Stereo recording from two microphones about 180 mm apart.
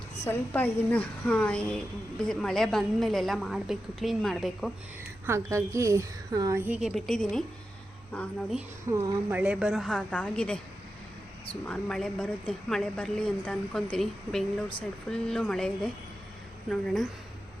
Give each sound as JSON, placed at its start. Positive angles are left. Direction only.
{"t": 0.3, "sound": "a woman's voice", "side_deg": 10}
{"t": 5.2, "sound": "a woman's voice", "side_deg": -15}
{"t": 6.7, "sound": "a woman's voice", "side_deg": -5}
{"t": 8.9, "sound": "a woman's voice", "side_deg": -10}
{"t": 11.6, "sound": "a woman's voice", "side_deg": 5}